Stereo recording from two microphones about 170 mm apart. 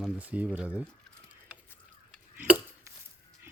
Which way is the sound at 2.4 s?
10° right (ahead or behind).